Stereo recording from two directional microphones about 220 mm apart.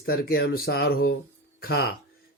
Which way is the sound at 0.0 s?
45° left (ahead or behind).